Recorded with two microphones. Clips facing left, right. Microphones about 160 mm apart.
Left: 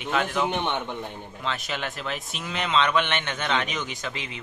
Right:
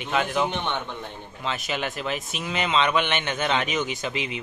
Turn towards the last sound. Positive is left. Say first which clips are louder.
# right 5 dB
turn(degrees=-15)  # may be behind; listen again after turning